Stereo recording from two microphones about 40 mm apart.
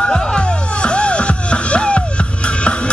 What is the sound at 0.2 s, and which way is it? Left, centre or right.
Music, left.